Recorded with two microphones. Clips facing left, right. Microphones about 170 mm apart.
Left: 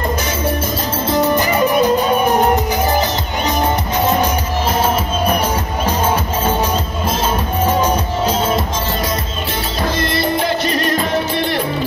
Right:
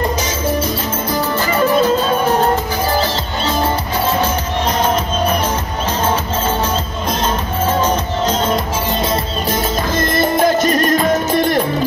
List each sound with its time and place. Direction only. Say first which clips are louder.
1.1 s music: left 4 dB; 15° left (ahead or behind)
7.6 s music: even; 10° left (ahead or behind)
9.9 s music: right 4 dB; 45° right (ahead or behind)